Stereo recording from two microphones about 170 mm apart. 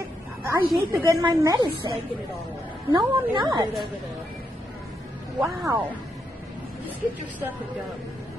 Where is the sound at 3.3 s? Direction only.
25° right (ahead or behind).